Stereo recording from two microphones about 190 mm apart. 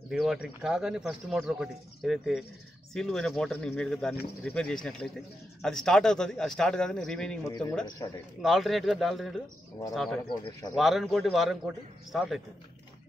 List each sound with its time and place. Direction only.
0.1 s speech: 5° right (ahead or behind)
7.4 s speech: 20° left (ahead or behind)
8.4 s speech: centre (ahead or behind)
10.7 s speech: centre (ahead or behind)